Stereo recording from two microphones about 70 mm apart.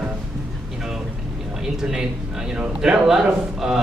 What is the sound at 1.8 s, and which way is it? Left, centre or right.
A man's voice, centre.